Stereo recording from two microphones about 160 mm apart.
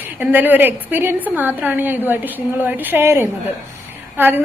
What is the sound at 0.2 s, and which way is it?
A woman's voice, 10° right (ahead or behind).